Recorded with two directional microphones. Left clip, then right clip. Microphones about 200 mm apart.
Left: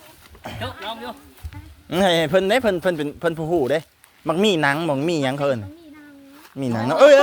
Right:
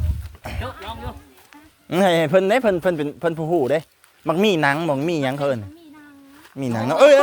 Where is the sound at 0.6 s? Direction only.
30° left (ahead or behind).